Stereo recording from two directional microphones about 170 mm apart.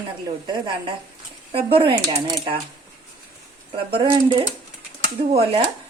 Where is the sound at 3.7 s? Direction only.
30° right (ahead or behind).